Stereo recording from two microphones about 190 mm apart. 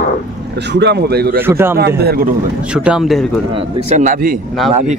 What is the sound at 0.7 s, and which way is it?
Speech, 60° right (ahead or behind).